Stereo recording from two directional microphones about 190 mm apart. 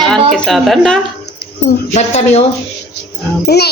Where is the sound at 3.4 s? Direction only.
60° left (ahead or behind).